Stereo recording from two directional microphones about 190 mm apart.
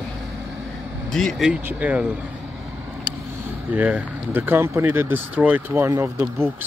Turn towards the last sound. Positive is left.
turn(degrees=-10)  # may be behind; listen again after turning